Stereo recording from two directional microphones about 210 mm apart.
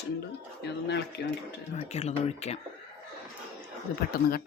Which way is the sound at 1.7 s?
30° left (ahead or behind).